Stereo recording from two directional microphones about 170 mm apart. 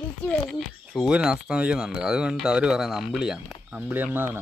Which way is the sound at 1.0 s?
5° right (ahead or behind).